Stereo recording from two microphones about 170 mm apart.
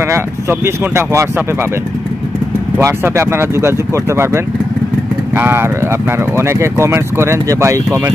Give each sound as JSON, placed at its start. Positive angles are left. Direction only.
{"t": 0.1, "sound": "speech", "side_deg": -15}
{"t": 2.8, "sound": "speech", "side_deg": -15}